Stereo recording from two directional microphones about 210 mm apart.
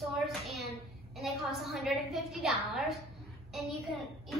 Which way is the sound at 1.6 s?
Centre (ahead or behind).